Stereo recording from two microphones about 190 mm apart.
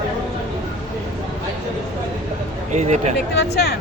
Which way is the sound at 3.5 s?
55° left (ahead or behind).